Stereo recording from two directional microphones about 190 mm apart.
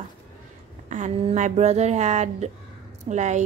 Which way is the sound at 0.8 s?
40° right (ahead or behind).